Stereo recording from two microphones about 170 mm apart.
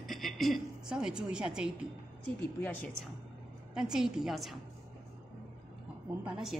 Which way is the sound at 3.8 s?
5° right (ahead or behind).